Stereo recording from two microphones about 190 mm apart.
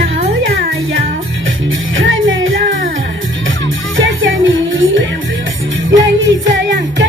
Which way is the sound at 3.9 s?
90° right.